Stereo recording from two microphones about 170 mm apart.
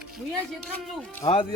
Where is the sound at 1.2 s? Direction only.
35° left (ahead or behind).